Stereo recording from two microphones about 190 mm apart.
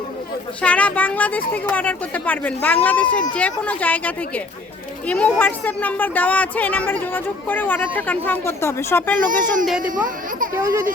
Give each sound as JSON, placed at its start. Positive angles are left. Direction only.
{"t": 0.6, "sound": "speech", "side_deg": 5}
{"t": 9.2, "sound": "speech", "side_deg": -45}
{"t": 10.6, "sound": "a child's voice", "side_deg": -15}